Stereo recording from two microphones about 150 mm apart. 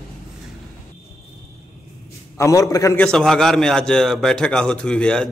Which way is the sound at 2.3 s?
20° left (ahead or behind).